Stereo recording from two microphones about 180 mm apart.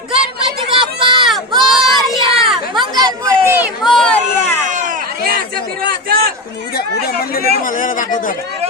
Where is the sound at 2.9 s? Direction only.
20° right (ahead or behind).